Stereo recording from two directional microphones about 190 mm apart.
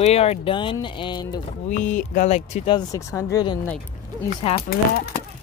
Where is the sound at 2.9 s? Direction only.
15° left (ahead or behind).